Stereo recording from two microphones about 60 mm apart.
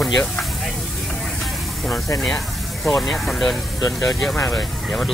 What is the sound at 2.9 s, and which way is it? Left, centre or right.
Speech, centre.